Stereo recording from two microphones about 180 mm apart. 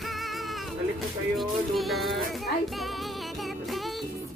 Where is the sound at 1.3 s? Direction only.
Centre (ahead or behind).